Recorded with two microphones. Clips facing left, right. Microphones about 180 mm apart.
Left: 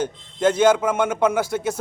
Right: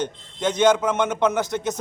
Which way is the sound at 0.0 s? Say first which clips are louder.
Left 5 dB; 5° left (ahead or behind).